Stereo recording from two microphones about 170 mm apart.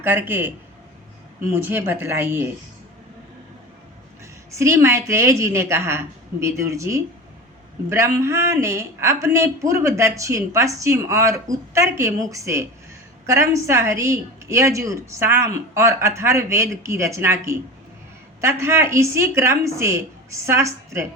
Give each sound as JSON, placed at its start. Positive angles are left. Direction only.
{"t": 0.0, "sound": "speech", "side_deg": -10}
{"t": 1.5, "sound": "speech", "side_deg": -10}
{"t": 4.5, "sound": "speech", "side_deg": -15}
{"t": 18.6, "sound": "speech", "side_deg": -15}